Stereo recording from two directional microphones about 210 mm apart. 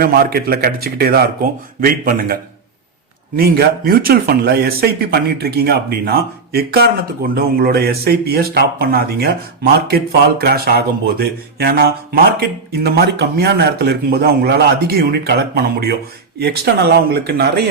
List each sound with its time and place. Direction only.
0.0 s speech: 45° right (ahead or behind)
3.3 s speech: 45° right (ahead or behind)